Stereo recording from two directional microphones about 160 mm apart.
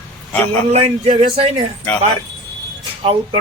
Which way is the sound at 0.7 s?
40° right (ahead or behind).